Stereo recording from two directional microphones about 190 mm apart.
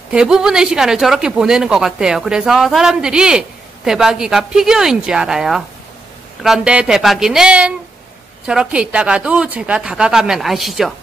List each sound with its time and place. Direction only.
0.1 s speech: 5° right (ahead or behind)